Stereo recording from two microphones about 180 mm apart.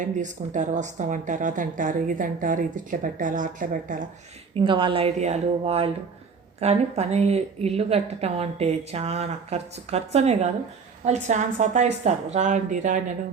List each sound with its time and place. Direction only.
0.0 s a woman's voice: 45° right (ahead or behind)
4.5 s a woman's voice: 30° right (ahead or behind)